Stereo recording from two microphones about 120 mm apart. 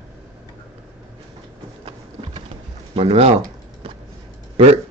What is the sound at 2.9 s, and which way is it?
Speech, 55° right (ahead or behind).